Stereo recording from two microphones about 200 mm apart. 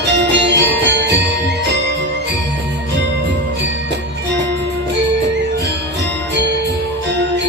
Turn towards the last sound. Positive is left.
turn(degrees=-60)  # may be behind; listen again after turning